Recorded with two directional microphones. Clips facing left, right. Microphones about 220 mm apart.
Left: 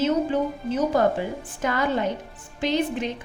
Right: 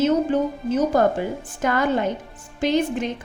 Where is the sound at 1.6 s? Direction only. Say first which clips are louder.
Right 3 dB; 50° right (ahead or behind).